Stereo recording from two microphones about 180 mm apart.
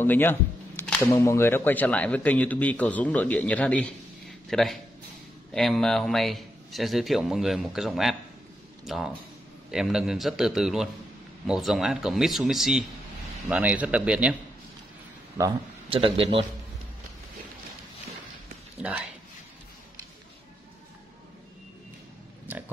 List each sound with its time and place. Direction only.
0.0 s a man's voice: 10° left (ahead or behind); by 14.3 s 5° right (ahead or behind)
15.9 s a man's voice: 30° right (ahead or behind)
18.8 s speech: 5° right (ahead or behind)
22.5 s pig: 10° right (ahead or behind)